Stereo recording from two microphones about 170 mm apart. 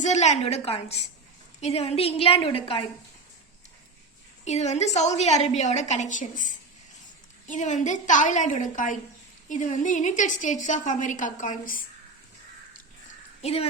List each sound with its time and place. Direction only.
0.0 s a woman's voice: 40° left (ahead or behind)
4.4 s a woman's voice: 40° left (ahead or behind)
13.4 s a woman's voice: 35° left (ahead or behind)